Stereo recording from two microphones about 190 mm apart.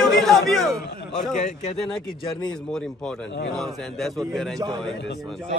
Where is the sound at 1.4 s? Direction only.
40° left (ahead or behind).